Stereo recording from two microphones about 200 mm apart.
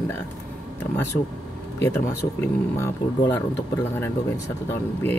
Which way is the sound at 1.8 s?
15° left (ahead or behind).